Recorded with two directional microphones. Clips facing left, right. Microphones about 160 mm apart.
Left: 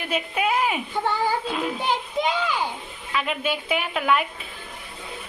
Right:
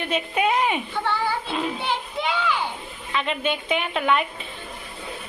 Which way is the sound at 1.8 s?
40° left (ahead or behind).